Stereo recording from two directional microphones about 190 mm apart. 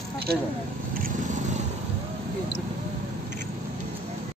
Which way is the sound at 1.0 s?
40° right (ahead or behind).